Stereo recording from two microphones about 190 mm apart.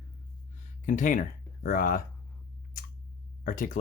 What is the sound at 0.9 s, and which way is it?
Speech, 40° left (ahead or behind).